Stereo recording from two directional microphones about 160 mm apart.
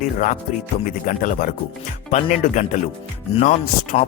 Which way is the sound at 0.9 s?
55° left (ahead or behind).